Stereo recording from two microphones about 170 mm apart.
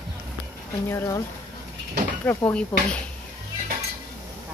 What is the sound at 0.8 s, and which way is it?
Speech, 15° left (ahead or behind).